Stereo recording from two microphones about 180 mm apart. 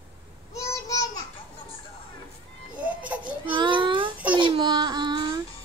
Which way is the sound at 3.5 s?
25° right (ahead or behind).